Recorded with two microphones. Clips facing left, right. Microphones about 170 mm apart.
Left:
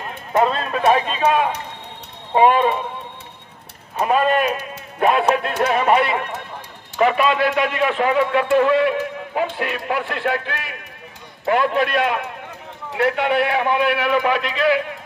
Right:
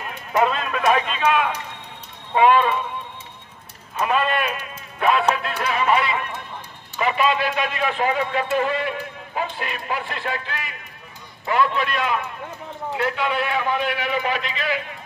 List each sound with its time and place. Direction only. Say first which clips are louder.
0.0 s speech: left 2 dB; 35° left (ahead or behind)
4.0 s a man's voice: left 4 dB; 40° left (ahead or behind); by 14.9 s 60° left (ahead or behind)